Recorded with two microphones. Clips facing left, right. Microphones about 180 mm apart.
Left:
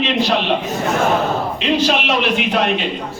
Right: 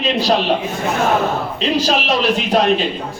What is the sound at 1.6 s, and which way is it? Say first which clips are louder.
A man's voice: even; 35° right (ahead or behind).